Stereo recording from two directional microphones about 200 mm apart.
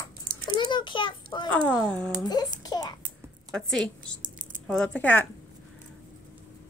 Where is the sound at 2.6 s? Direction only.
20° left (ahead or behind).